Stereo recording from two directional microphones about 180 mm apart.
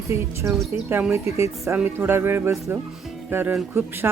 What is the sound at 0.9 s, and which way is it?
Speech, 15° right (ahead or behind).